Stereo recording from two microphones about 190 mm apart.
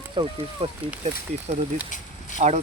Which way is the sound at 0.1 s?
25° right (ahead or behind).